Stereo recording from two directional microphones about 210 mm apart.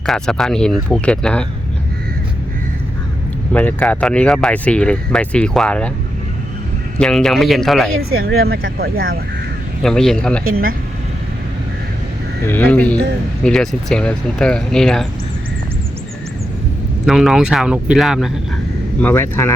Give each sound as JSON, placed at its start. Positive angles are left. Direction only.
{"t": 0.0, "sound": "speech", "side_deg": 0}
{"t": 3.5, "sound": "speech", "side_deg": 10}
{"t": 7.0, "sound": "speech", "side_deg": 5}
{"t": 8.1, "sound": "speech", "side_deg": -50}
{"t": 9.8, "sound": "speech", "side_deg": 0}
{"t": 10.4, "sound": "speech", "side_deg": -45}
{"t": 12.5, "sound": "speech", "side_deg": 10}
{"t": 17.1, "sound": "speech", "side_deg": 0}
{"t": 18.9, "sound": "speech", "side_deg": 10}